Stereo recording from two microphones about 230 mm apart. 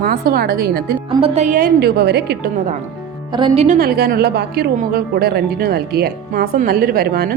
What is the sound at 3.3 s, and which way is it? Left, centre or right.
Speech, right.